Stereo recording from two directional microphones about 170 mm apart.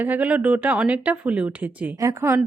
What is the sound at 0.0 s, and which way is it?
Speech, 10° right (ahead or behind).